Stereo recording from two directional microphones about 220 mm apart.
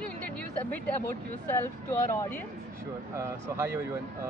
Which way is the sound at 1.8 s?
10° left (ahead or behind).